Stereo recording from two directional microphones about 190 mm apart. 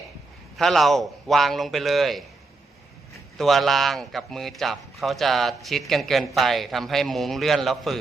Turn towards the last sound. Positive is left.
turn(degrees=0)  # may be behind; listen again after turning